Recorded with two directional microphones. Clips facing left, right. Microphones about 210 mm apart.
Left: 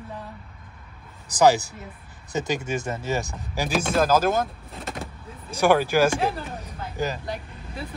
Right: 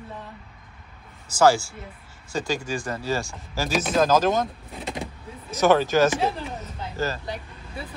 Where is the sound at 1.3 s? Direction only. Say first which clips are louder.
Even; 15° left (ahead or behind).